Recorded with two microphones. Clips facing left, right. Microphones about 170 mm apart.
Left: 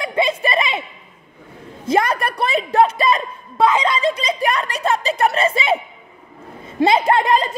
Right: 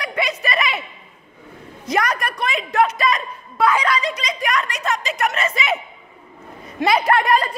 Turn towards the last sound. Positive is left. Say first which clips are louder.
# left 1 dB
turn(degrees=20)  # may be behind; listen again after turning